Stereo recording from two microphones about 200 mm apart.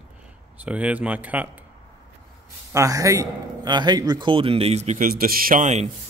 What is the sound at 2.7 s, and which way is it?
A man's voice, 15° right (ahead or behind).